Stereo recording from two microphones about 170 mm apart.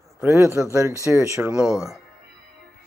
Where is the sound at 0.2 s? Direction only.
15° right (ahead or behind).